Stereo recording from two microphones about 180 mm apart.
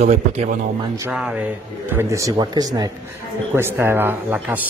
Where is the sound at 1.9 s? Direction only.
15° right (ahead or behind).